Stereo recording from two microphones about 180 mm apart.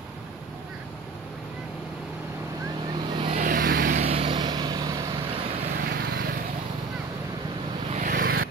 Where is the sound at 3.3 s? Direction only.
50° right (ahead or behind).